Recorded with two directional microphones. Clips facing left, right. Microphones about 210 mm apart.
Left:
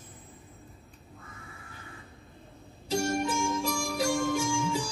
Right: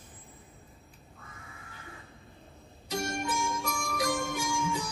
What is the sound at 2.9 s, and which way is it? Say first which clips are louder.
Music: left 5 dB; 30° left (ahead or behind).